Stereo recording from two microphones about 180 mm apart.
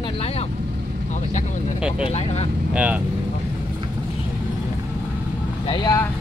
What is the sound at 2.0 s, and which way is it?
Speech, 35° left (ahead or behind).